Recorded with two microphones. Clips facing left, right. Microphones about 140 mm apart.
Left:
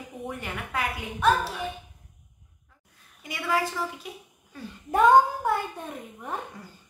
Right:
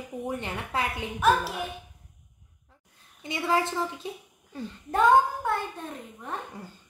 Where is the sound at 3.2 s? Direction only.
25° right (ahead or behind).